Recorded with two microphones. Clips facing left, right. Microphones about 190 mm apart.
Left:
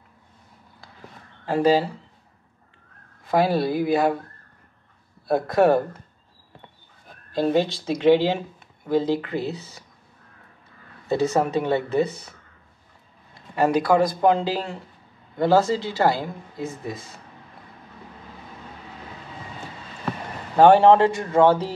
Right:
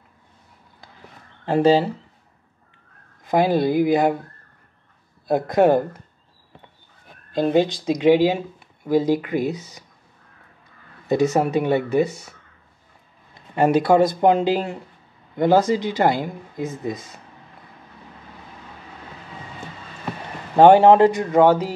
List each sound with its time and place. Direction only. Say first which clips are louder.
1.4 s speech: right 3 dB; 25° right (ahead or behind)
3.3 s speech: right 2 dB; 20° right (ahead or behind)
5.3 s speech: right 2 dB; 20° right (ahead or behind)
7.3 s speech: right 3 dB; 15° right (ahead or behind)
11.1 s speech: right 3 dB; 15° right (ahead or behind)
13.6 s speech: right 3 dB; 25° right (ahead or behind)
20.5 s speech: right 2 dB; 20° right (ahead or behind)